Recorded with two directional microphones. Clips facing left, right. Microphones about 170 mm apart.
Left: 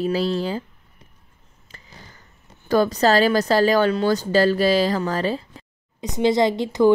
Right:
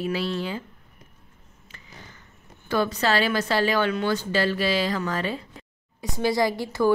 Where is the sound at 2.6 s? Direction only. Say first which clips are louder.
Left 6 dB; 40° left (ahead or behind).